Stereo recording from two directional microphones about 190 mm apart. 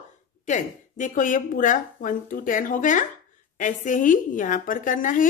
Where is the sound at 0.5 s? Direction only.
40° left (ahead or behind).